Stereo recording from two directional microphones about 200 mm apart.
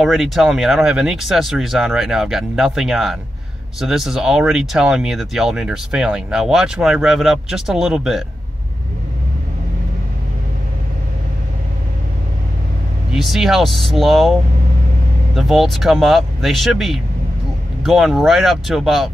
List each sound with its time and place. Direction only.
0.0 s speech: centre (ahead or behind)
13.1 s speech: centre (ahead or behind)